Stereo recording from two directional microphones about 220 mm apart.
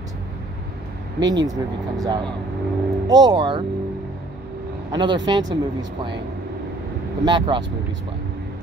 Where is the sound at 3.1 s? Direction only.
55° right (ahead or behind).